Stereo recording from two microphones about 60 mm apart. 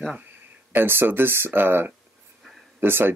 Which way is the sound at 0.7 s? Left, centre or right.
Right.